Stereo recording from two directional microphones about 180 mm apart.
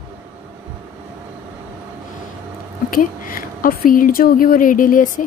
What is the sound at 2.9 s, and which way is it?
Speech, 50° left (ahead or behind).